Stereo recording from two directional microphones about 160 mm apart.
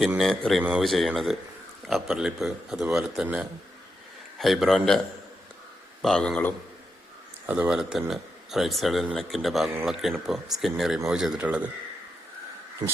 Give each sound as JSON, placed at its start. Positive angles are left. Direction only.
{"t": 0.2, "sound": "speech", "side_deg": 0}
{"t": 7.4, "sound": "speech", "side_deg": -10}
{"t": 12.8, "sound": "a sound", "side_deg": -25}